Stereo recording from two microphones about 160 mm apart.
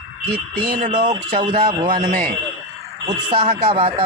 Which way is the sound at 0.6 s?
30° right (ahead or behind).